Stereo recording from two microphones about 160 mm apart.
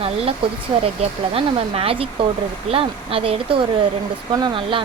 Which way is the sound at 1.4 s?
35° right (ahead or behind).